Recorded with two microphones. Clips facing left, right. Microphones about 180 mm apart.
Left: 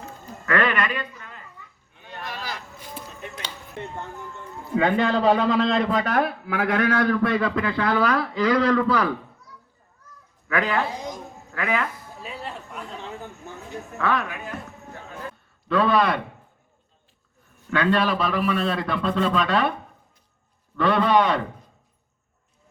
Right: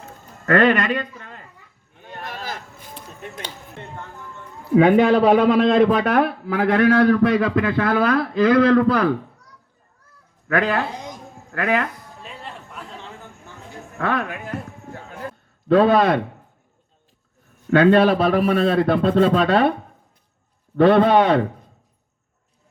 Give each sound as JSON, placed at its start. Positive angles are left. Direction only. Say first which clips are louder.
{"t": 0.4, "sound": "a man's voice", "louder": "right 6 dB", "side_deg": -40}
{"t": 1.9, "sound": "a sound", "louder": "right 2 dB", "side_deg": -50}
{"t": 3.2, "sound": "music", "louder": "right 6 dB", "side_deg": -50}
{"t": 4.8, "sound": "a man's voice", "louder": "right 7 dB", "side_deg": -65}
{"t": 6.5, "sound": "a man's voice", "louder": "right 7 dB", "side_deg": -40}
{"t": 10.5, "sound": "a man's voice", "louder": "right 3 dB", "side_deg": -55}
{"t": 12.2, "sound": "a sound", "louder": "left 3 dB", "side_deg": 5}
{"t": 14.0, "sound": "a man's voice", "louder": "right 2 dB", "side_deg": -55}
{"t": 14.5, "sound": "a sound", "louder": "right 5 dB", "side_deg": -45}
{"t": 15.7, "sound": "a man's voice", "louder": "right 6 dB", "side_deg": -45}
{"t": 17.7, "sound": "a man's voice", "louder": "right 8 dB", "side_deg": -45}
{"t": 20.7, "sound": "a man's voice", "louder": "right 6 dB", "side_deg": -50}